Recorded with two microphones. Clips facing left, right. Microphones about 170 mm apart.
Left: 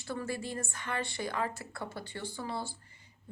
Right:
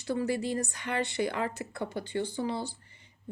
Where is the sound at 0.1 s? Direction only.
20° right (ahead or behind).